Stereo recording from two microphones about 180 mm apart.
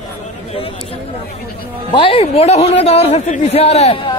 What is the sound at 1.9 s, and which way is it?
A man's voice, 30° left (ahead or behind).